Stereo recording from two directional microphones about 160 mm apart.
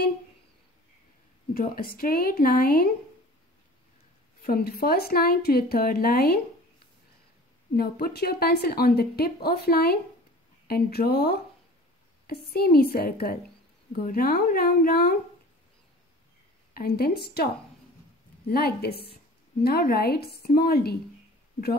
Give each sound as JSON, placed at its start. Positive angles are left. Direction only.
{"t": 1.5, "sound": "a woman's voice", "side_deg": 65}
{"t": 4.4, "sound": "speech", "side_deg": 70}
{"t": 7.7, "sound": "a woman's voice", "side_deg": 75}
{"t": 16.7, "sound": "speech", "side_deg": 70}
{"t": 18.5, "sound": "speech", "side_deg": 75}